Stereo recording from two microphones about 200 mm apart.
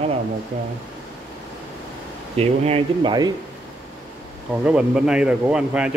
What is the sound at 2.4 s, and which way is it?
Speech, 30° right (ahead or behind).